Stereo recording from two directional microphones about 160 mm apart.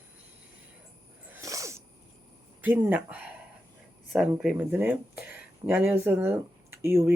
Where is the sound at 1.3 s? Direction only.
20° right (ahead or behind).